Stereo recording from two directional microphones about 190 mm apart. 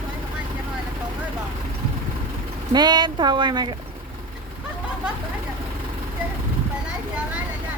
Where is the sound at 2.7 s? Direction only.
20° right (ahead or behind).